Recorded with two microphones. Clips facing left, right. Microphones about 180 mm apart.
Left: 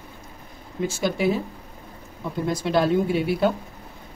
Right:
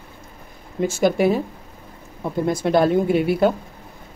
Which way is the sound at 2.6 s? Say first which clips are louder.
Right 3 dB; 50° right (ahead or behind).